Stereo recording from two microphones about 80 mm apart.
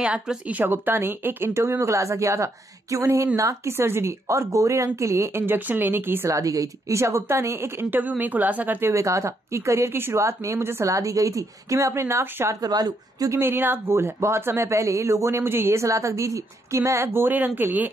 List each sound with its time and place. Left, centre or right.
0.0 s speech: centre
6.3 s speech: right
8.9 s speech: right
10.9 s speech: right
12.5 s speech: right
13.3 s speech: right